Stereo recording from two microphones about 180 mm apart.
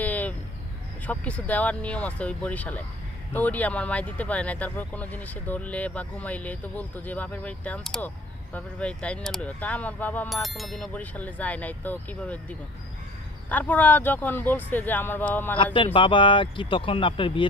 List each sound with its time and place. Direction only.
0.0 s a sound: 10° left (ahead or behind)
1.0 s speech: 10° left (ahead or behind)
15.5 s speech: 30° left (ahead or behind)